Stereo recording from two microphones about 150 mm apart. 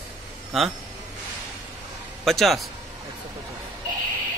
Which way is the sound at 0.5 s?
Centre (ahead or behind).